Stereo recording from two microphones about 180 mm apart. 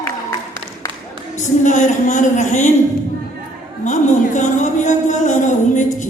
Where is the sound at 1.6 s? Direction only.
45° left (ahead or behind).